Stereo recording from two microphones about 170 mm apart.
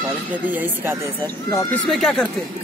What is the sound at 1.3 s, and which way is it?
Speech, 15° left (ahead or behind).